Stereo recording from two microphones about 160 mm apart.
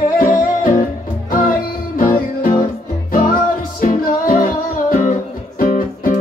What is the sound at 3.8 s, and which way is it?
Music, 60° left (ahead or behind).